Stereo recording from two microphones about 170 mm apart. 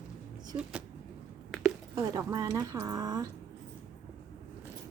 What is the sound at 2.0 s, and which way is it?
A woman's voice, 20° right (ahead or behind).